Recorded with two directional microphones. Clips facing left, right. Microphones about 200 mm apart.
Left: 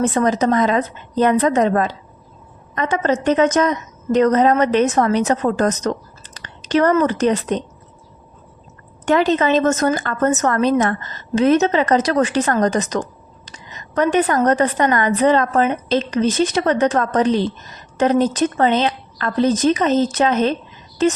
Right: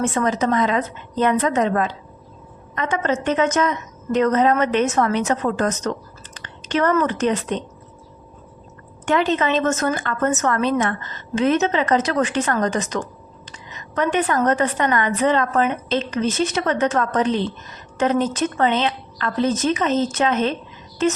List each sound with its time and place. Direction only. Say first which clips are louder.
0.0 s a woman's voice: left 4 dB; 35° left (ahead or behind)
9.0 s a woman's voice: left 4 dB; 40° left (ahead or behind)